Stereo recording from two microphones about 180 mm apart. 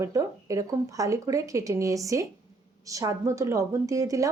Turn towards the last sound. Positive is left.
turn(degrees=-20)  # may be behind; listen again after turning